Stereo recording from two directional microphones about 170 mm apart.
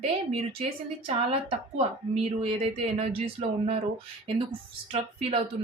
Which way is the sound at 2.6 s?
35° right (ahead or behind).